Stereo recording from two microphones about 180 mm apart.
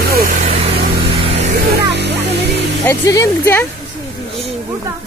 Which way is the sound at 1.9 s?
75° right (ahead or behind).